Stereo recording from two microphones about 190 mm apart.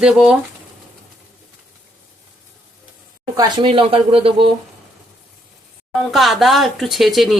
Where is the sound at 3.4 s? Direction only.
25° right (ahead or behind).